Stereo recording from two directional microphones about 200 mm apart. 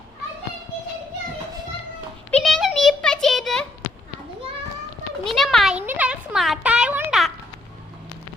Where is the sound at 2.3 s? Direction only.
5° left (ahead or behind).